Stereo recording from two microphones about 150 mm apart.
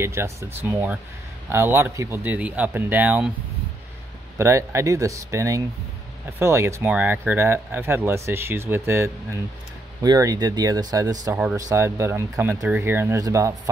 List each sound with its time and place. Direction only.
0.0 s speech: 15° right (ahead or behind)
4.4 s speech: 20° right (ahead or behind)